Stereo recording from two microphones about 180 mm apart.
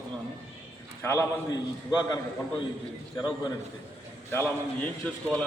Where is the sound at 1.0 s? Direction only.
15° left (ahead or behind).